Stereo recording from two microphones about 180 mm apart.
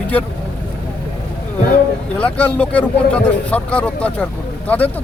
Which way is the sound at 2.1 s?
5° left (ahead or behind).